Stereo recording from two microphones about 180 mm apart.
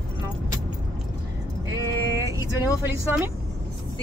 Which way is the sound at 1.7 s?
20° right (ahead or behind).